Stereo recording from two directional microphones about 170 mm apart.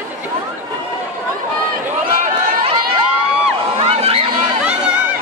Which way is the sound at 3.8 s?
35° right (ahead or behind).